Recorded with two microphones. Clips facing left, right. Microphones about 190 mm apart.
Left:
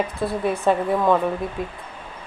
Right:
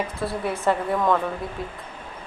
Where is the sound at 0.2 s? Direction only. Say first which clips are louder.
Left 4 dB; 15° left (ahead or behind).